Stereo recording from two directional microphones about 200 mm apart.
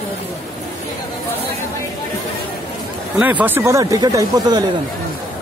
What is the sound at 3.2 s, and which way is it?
Speech, 10° right (ahead or behind).